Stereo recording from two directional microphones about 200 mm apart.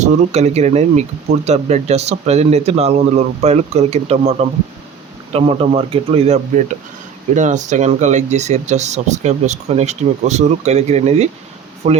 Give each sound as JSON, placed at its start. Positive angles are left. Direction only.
{"t": 0.0, "sound": "speech", "side_deg": -35}